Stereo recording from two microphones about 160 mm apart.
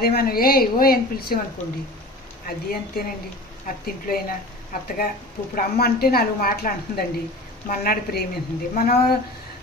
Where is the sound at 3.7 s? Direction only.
60° left (ahead or behind).